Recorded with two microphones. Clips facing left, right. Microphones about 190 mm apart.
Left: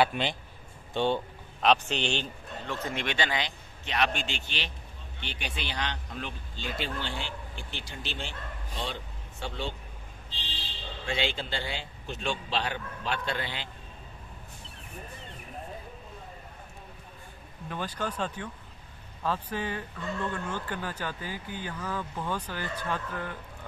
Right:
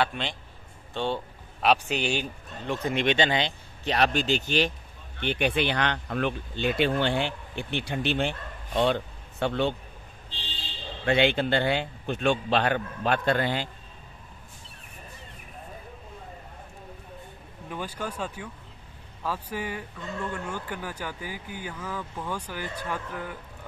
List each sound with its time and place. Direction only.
0.0 s a man's voice: 5° left (ahead or behind); by 4.7 s 45° right (ahead or behind)
5.2 s speech: 55° right (ahead or behind)
11.1 s speech: 60° right (ahead or behind)
17.6 s speech: 10° right (ahead or behind)